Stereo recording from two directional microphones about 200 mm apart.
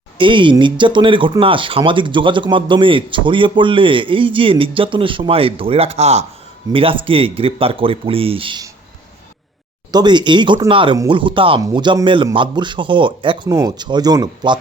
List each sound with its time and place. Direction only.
0.2 s speech: 25° right (ahead or behind)
9.9 s speech: 20° right (ahead or behind)